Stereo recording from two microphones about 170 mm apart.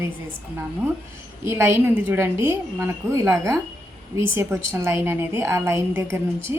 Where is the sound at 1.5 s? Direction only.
15° right (ahead or behind).